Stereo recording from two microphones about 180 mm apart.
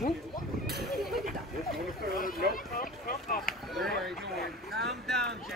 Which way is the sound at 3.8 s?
Centre (ahead or behind).